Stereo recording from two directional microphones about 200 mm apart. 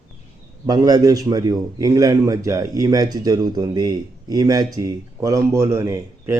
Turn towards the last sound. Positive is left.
turn(degrees=-15)  # may be behind; listen again after turning